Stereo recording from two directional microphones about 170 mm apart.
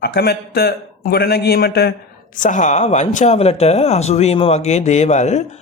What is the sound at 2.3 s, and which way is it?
A man's voice, 45° left (ahead or behind).